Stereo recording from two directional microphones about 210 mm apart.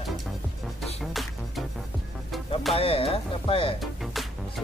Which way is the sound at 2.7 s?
25° left (ahead or behind).